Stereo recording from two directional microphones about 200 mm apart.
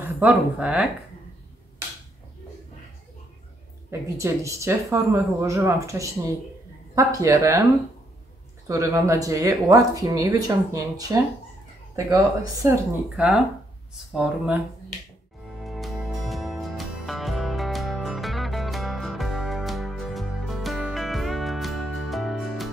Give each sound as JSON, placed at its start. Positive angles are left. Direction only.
{"t": 0.0, "sound": "speech", "side_deg": -10}
{"t": 3.9, "sound": "speech", "side_deg": -15}
{"t": 8.6, "sound": "speech", "side_deg": -15}
{"t": 13.1, "sound": "speech", "side_deg": -5}
{"t": 15.6, "sound": "music", "side_deg": 0}